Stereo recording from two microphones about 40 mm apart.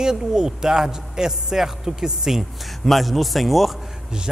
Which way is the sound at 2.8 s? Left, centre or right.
Centre.